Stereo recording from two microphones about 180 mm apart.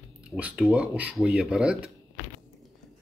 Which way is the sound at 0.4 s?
5° right (ahead or behind).